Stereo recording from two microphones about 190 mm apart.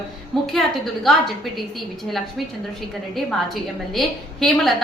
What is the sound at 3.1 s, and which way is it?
A woman's voice, centre (ahead or behind).